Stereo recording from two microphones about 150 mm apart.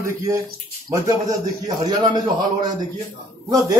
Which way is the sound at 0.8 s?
25° right (ahead or behind).